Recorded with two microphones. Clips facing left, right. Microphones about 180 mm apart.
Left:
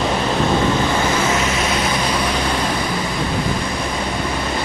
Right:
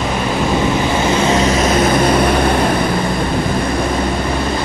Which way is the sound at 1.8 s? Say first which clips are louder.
Right 8 dB; 50° right (ahead or behind).